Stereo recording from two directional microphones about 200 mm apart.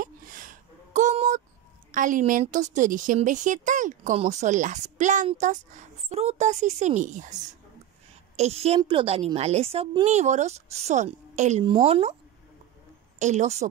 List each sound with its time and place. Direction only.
0.0 s a sound: 40° right (ahead or behind)
1.9 s a woman's voice: 40° right (ahead or behind)
13.2 s a woman's voice: 35° right (ahead or behind)